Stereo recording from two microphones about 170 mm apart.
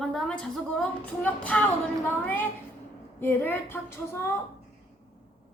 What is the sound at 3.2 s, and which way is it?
A child's voice, 10° left (ahead or behind).